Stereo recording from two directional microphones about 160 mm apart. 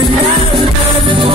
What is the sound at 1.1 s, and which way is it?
Music, 30° right (ahead or behind).